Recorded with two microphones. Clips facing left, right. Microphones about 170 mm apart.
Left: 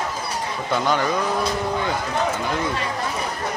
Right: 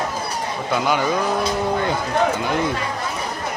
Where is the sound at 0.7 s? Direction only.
5° right (ahead or behind).